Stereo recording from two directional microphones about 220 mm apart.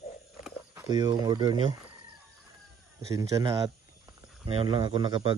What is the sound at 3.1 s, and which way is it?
Speech, 15° right (ahead or behind).